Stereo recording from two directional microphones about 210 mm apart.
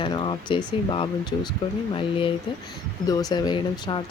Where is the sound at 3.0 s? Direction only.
20° left (ahead or behind).